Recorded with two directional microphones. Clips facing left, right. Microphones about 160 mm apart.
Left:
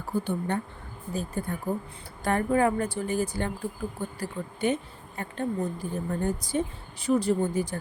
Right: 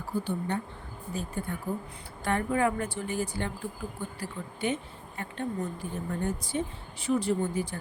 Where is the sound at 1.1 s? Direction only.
40° left (ahead or behind).